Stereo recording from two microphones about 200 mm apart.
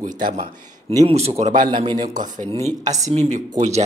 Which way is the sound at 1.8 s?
20° right (ahead or behind).